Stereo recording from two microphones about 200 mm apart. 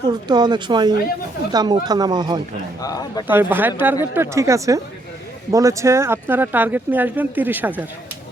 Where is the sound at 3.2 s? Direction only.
10° right (ahead or behind).